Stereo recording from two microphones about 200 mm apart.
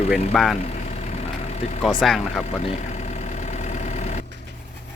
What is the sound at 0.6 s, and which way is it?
Vehicle, 35° left (ahead or behind).